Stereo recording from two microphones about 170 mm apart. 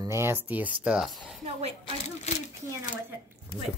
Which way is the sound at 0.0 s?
15° right (ahead or behind).